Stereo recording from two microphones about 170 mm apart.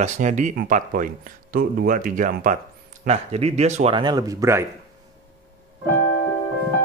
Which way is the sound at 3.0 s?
40° right (ahead or behind).